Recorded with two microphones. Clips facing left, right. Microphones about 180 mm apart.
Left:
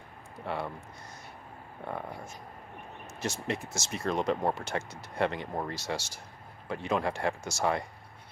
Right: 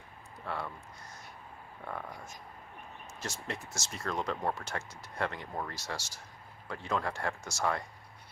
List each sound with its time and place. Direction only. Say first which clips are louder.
0.4 s speech: left 4 dB; 20° left (ahead or behind)
1.9 s speech: left 4 dB; 25° left (ahead or behind)
3.2 s speech: left 7 dB; 20° left (ahead or behind)